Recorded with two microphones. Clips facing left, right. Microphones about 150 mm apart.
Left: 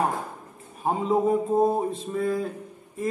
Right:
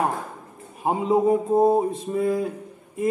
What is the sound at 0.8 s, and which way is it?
A man's voice, 15° right (ahead or behind).